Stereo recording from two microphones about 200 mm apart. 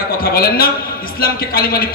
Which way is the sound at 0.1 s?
50° left (ahead or behind).